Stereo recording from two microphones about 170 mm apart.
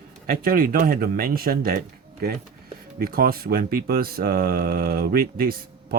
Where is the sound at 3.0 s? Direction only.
60° right (ahead or behind).